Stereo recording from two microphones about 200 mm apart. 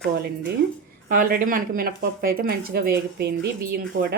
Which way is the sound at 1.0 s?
45° right (ahead or behind).